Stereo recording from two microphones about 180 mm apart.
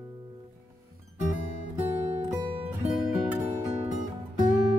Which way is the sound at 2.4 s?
30° right (ahead or behind).